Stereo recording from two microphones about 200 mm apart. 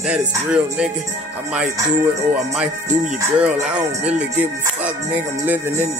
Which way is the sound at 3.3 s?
5° right (ahead or behind).